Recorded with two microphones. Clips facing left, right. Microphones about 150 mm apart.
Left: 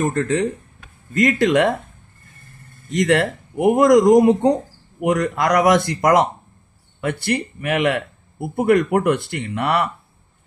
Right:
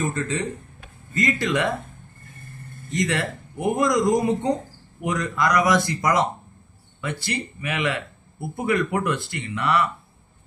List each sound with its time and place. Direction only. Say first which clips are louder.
0.0 s speech: left 6 dB; 65° left (ahead or behind)
2.9 s speech: left 7 dB; 60° left (ahead or behind)